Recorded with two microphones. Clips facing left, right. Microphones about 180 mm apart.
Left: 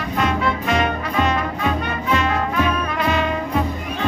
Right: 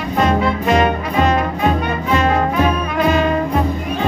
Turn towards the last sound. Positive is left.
turn(degrees=-40)  # may be behind; listen again after turning